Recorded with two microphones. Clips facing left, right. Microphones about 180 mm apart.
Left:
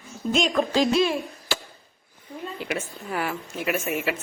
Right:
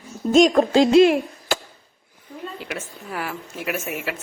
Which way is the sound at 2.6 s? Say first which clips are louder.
Left 2 dB; centre (ahead or behind).